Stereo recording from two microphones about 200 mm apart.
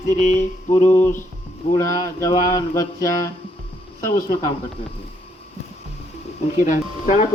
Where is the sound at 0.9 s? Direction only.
10° left (ahead or behind).